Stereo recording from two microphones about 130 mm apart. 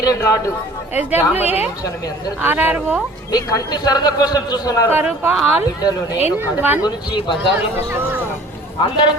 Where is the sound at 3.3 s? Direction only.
30° left (ahead or behind).